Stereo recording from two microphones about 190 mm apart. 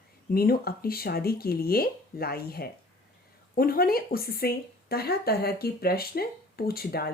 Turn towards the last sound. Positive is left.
turn(degrees=55)  # may be behind; listen again after turning